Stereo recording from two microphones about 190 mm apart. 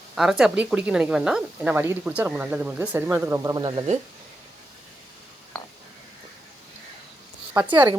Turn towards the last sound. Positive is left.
turn(degrees=-20)  # may be behind; listen again after turning